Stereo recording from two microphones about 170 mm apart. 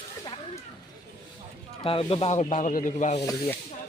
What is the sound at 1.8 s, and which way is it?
Speech, 35° left (ahead or behind).